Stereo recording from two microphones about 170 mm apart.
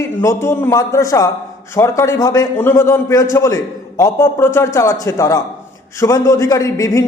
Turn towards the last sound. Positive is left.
turn(degrees=20)  # may be behind; listen again after turning